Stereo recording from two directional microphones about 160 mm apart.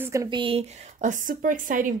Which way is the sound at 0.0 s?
20° right (ahead or behind).